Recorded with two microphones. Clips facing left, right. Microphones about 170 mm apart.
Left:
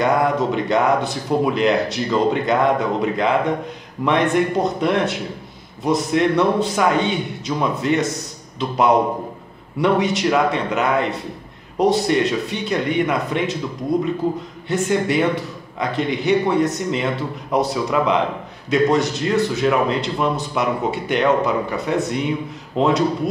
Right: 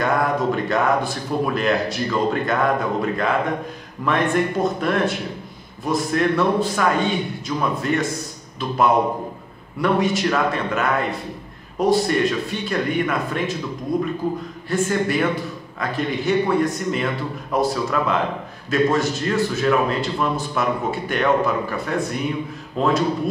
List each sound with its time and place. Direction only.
0.0 s a man's voice: 20° left (ahead or behind)
14.7 s a man's voice: 20° left (ahead or behind)